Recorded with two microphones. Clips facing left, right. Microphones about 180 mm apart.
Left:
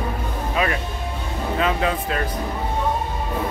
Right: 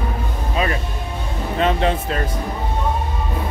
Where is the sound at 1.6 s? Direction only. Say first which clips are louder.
Right 4 dB; 30° right (ahead or behind).